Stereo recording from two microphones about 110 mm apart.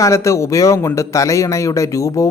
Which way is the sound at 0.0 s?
25° left (ahead or behind).